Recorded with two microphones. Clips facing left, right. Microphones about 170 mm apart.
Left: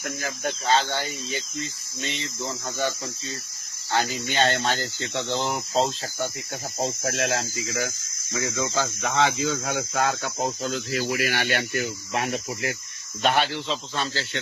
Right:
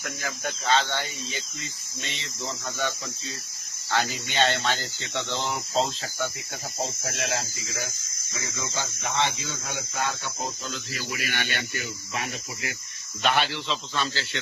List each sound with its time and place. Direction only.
0.4 s speech: 35° left (ahead or behind)
4.4 s speech: 45° left (ahead or behind)
6.8 s speech: 70° left (ahead or behind); by 10.7 s 90° left
10.7 s speech: 65° left (ahead or behind)
13.2 s speech: 40° left (ahead or behind)